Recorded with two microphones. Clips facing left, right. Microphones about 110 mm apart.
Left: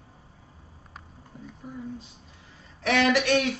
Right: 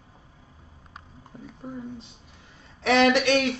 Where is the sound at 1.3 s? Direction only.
25° right (ahead or behind).